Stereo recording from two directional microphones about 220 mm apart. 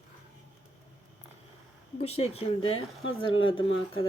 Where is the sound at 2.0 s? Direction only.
25° left (ahead or behind).